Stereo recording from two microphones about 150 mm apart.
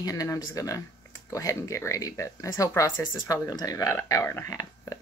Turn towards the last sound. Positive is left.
turn(degrees=25)  # may be behind; listen again after turning